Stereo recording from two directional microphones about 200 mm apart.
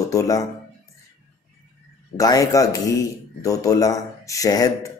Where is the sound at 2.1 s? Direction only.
15° left (ahead or behind).